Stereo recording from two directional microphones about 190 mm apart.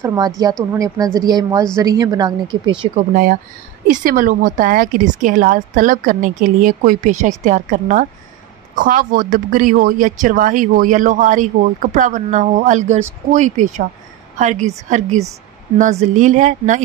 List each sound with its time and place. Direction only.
0.0 s a woman's voice: 15° right (ahead or behind)
3.0 s a woman's voice: 45° right (ahead or behind)